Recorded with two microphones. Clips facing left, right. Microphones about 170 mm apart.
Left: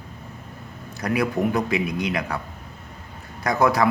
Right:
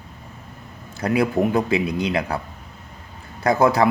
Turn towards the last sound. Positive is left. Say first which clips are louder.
# right 3 dB
turn(degrees=-30)  # may be behind; listen again after turning